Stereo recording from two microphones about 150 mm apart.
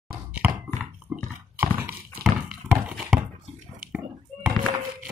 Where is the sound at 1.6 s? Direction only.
15° right (ahead or behind).